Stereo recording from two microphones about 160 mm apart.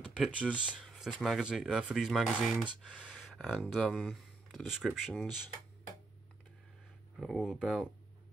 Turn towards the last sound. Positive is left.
turn(degrees=0)  # may be behind; listen again after turning